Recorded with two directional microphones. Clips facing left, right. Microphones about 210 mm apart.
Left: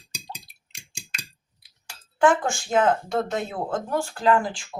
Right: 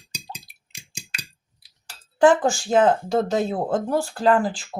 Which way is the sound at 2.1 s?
35° right (ahead or behind).